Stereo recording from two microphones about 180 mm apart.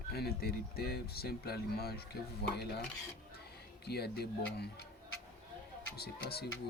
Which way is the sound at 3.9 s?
60° left (ahead or behind).